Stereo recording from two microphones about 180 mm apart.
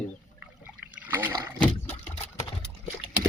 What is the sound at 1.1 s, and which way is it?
Speech, 15° right (ahead or behind).